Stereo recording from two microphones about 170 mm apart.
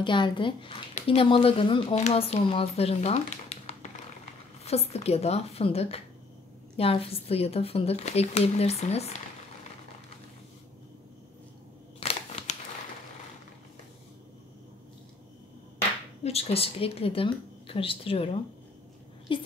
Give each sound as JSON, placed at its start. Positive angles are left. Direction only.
{"t": 0.0, "sound": "speech", "side_deg": 30}
{"t": 12.0, "sound": "crumpling", "side_deg": 35}
{"t": 16.3, "sound": "a woman's voice", "side_deg": 35}